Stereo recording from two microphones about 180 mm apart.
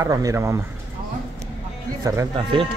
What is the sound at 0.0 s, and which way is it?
Speech, 20° right (ahead or behind).